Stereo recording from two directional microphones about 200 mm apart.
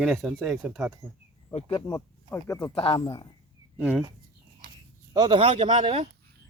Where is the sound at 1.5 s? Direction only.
30° left (ahead or behind).